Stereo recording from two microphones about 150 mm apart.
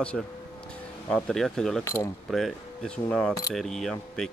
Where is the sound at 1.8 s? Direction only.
20° left (ahead or behind).